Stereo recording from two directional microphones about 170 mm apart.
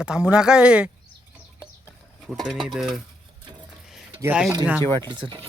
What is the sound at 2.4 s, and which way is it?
Speech, 5° right (ahead or behind).